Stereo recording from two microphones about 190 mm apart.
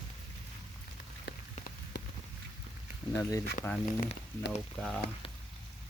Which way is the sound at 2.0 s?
65° left (ahead or behind).